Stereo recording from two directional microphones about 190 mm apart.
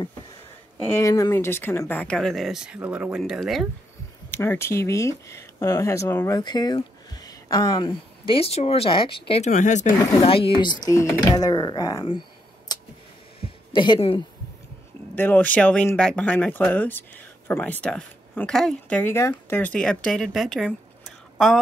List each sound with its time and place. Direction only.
0.8 s speech: 15° left (ahead or behind)
4.3 s a woman's voice: 10° left (ahead or behind); by 9.2 s 25° left (ahead or behind)
9.3 s speech: 40° left (ahead or behind)
10.1 s speech: 30° left (ahead or behind)
12.7 s a sound: 20° left (ahead or behind)
15.1 s speech: 10° left (ahead or behind)